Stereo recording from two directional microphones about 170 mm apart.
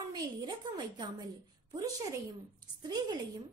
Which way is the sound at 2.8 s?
25° right (ahead or behind).